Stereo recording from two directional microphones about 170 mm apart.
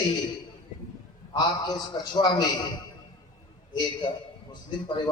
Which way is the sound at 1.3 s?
25° left (ahead or behind).